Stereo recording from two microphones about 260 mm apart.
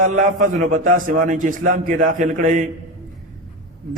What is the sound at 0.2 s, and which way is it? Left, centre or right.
A man's voice, right.